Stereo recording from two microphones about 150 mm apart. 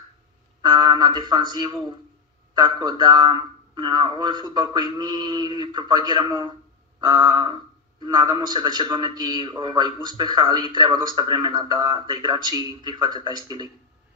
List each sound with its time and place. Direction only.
0.6 s a man's voice: 30° right (ahead or behind)